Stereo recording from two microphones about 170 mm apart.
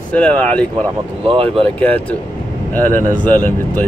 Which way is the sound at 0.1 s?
5° left (ahead or behind).